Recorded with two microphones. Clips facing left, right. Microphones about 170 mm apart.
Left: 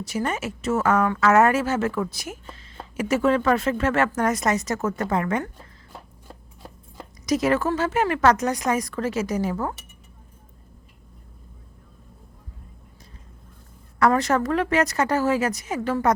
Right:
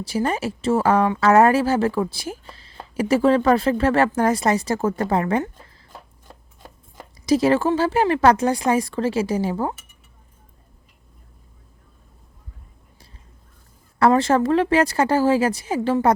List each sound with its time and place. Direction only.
0.0 s speech: 30° right (ahead or behind)
7.3 s speech: 30° right (ahead or behind)
14.0 s speech: 30° right (ahead or behind)